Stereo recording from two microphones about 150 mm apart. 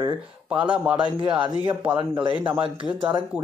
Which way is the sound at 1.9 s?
30° right (ahead or behind).